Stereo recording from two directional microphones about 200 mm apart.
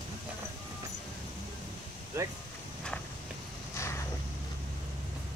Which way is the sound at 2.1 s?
15° right (ahead or behind).